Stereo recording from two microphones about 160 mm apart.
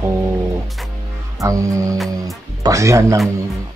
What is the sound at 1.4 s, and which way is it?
Speech, 20° right (ahead or behind).